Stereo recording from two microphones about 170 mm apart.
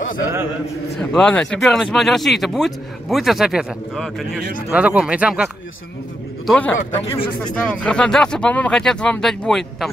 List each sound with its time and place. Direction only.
1.1 s speech: 5° left (ahead or behind)
6.4 s a man's voice: 5° left (ahead or behind)
6.8 s speech: 35° left (ahead or behind)
7.6 s speech: 5° left (ahead or behind)